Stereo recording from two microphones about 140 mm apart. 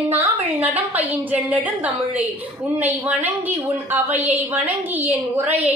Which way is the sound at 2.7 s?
10° right (ahead or behind).